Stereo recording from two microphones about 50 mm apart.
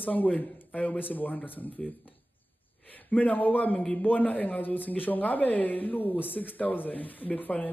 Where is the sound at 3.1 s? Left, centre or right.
Left.